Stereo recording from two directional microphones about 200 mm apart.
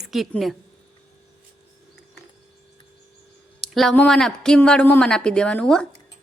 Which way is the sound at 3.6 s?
Centre (ahead or behind).